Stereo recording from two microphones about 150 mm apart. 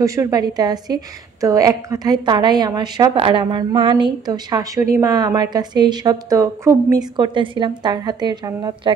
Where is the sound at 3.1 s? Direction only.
35° right (ahead or behind).